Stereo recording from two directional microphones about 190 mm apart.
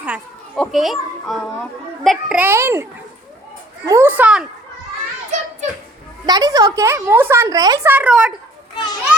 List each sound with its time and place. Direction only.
0.5 s speech: centre (ahead or behind)
3.8 s speech: 10° right (ahead or behind)
5.3 s music: 35° right (ahead or behind)
6.2 s speech: 20° right (ahead or behind)
8.7 s children playing: 25° left (ahead or behind)